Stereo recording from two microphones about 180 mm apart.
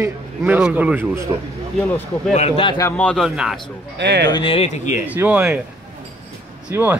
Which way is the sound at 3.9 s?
70° right (ahead or behind).